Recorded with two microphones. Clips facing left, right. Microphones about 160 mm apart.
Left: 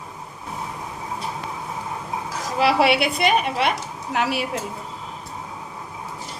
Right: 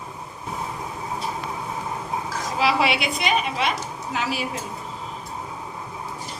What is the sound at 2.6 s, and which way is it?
A woman's voice, 60° left (ahead or behind).